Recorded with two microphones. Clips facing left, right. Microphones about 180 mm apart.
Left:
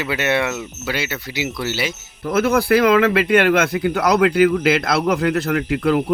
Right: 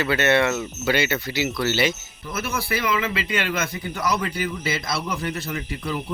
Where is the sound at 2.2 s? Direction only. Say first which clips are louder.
Left 12 dB; 60° left (ahead or behind).